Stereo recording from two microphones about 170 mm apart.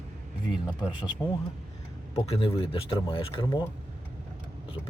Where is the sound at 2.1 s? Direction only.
35° left (ahead or behind).